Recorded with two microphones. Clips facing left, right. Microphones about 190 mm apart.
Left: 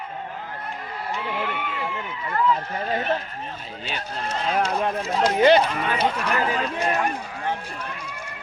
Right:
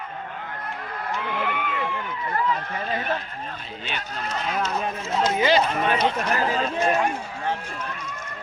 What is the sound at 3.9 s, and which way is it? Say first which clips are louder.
Speech: left 2 dB; 30° left (ahead or behind).